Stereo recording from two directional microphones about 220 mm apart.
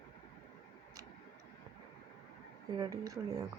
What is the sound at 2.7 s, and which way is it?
Speech, 15° right (ahead or behind).